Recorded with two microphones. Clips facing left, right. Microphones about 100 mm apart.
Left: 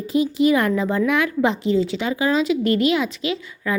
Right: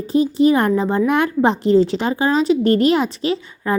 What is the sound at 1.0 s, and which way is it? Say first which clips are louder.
Speech: right 4 dB; 40° right (ahead or behind).